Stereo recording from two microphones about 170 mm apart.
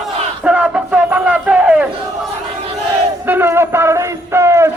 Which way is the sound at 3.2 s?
10° right (ahead or behind).